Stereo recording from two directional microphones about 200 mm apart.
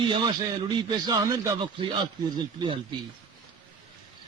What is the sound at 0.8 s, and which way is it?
A man's voice, 20° right (ahead or behind).